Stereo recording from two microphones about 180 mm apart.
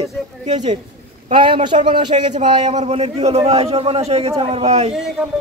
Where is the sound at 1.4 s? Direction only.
25° right (ahead or behind).